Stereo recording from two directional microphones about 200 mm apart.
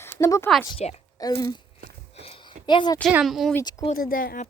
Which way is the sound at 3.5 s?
20° left (ahead or behind).